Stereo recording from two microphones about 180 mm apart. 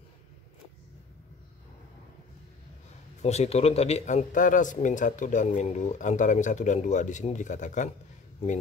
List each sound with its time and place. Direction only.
3.2 s speech: 35° left (ahead or behind)